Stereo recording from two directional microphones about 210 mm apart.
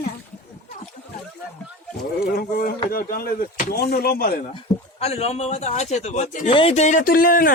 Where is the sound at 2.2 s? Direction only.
45° left (ahead or behind).